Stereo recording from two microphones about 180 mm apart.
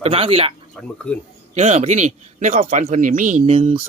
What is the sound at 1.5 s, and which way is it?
Speech, 40° right (ahead or behind).